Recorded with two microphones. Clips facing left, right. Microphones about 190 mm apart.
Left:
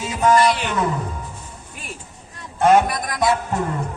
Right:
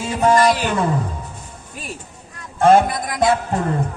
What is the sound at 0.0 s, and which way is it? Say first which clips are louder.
Speech: right 1 dB; 30° right (ahead or behind).